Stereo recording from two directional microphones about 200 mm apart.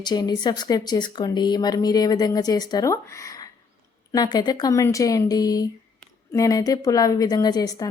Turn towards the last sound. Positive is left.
turn(degrees=20)  # may be behind; listen again after turning